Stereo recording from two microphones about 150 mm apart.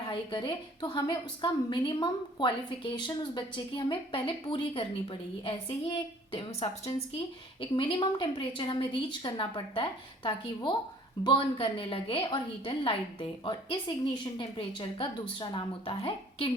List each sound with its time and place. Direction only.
0.1 s a woman's voice: 35° left (ahead or behind)